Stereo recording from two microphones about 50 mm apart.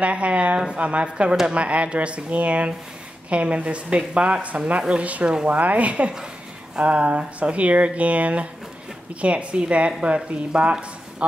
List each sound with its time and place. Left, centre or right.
0.0 s speech: right
5.3 s speech: centre
5.6 s speech: right